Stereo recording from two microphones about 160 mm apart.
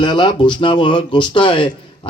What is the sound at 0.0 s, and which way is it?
A man's voice, 30° left (ahead or behind).